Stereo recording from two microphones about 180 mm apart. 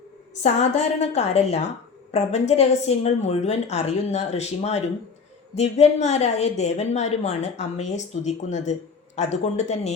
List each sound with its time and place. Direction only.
0.4 s a woman's voice: 40° left (ahead or behind)